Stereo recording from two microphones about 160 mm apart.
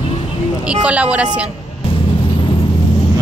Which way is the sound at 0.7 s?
10° right (ahead or behind).